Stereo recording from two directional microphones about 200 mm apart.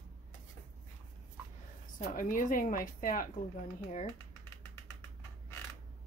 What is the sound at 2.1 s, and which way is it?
Speech, 40° left (ahead or behind).